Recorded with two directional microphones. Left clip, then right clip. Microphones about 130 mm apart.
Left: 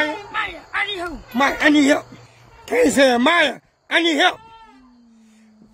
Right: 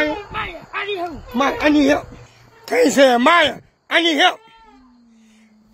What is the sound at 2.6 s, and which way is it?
Speech, centre (ahead or behind).